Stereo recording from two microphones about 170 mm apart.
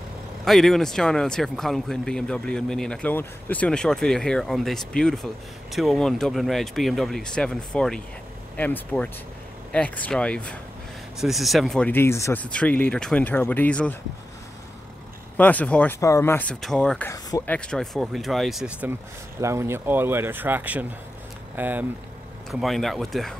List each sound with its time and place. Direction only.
0.5 s speech: centre (ahead or behind)
11.9 s speech: 15° left (ahead or behind)
15.3 s speech: 10° left (ahead or behind)
19.4 s speech: 15° right (ahead or behind)
22.5 s speech: centre (ahead or behind)